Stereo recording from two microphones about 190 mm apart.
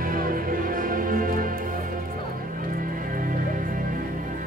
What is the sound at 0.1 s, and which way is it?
Music, 45° right (ahead or behind).